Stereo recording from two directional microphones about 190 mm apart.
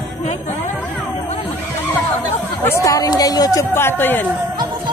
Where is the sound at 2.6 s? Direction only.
15° left (ahead or behind).